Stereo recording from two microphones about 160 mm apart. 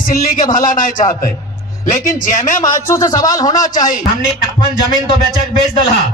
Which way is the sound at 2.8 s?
20° left (ahead or behind).